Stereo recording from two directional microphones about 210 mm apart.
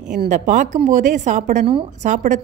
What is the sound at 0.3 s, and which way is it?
A woman's voice, 35° right (ahead or behind).